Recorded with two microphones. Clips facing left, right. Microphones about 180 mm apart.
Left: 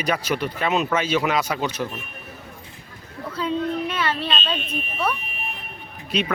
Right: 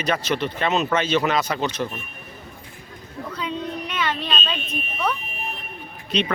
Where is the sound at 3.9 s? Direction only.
5° left (ahead or behind).